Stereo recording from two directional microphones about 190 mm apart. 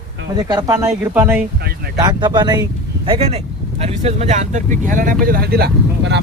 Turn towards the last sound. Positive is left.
turn(degrees=-60)  # may be behind; listen again after turning